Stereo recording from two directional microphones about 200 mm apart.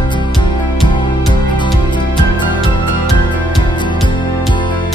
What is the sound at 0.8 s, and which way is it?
Music, 25° left (ahead or behind).